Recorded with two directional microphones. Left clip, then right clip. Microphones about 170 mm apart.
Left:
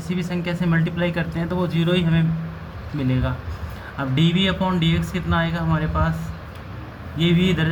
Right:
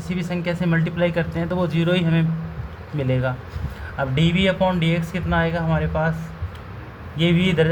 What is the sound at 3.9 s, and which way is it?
Speech, 45° right (ahead or behind).